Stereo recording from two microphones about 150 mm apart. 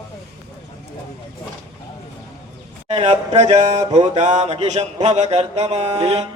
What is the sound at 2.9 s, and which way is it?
A man's voice, 45° right (ahead or behind).